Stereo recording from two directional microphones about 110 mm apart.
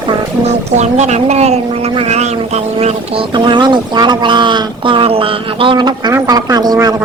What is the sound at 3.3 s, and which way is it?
A woman's voice, 45° right (ahead or behind).